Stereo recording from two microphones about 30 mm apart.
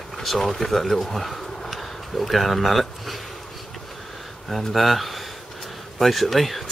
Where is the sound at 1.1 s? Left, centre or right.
Centre.